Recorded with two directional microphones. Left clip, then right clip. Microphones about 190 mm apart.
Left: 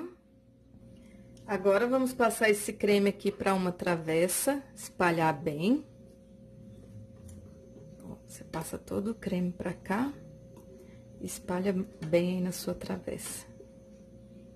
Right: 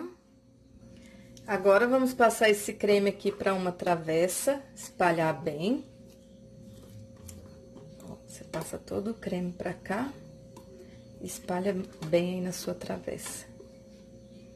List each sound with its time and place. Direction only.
1.4 s a woman's voice: centre (ahead or behind)
2.9 s speech: 15° left (ahead or behind)
8.6 s speech: 15° left (ahead or behind)
11.4 s a woman's voice: 15° left (ahead or behind)